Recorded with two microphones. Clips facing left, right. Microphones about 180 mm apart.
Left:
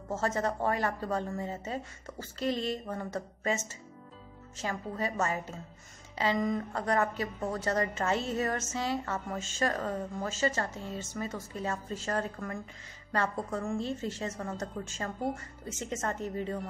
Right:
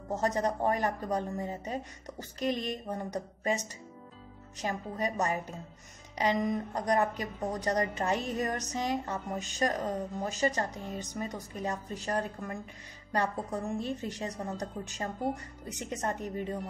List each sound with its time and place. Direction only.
0.1 s a woman's voice: 15° right (ahead or behind)
15.7 s a woman's voice: 15° right (ahead or behind)